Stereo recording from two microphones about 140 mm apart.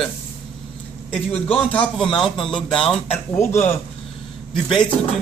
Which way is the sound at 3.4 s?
15° left (ahead or behind).